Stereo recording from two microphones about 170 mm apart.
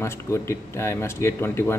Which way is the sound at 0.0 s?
15° left (ahead or behind).